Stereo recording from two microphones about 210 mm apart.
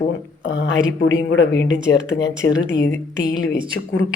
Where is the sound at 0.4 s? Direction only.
55° left (ahead or behind).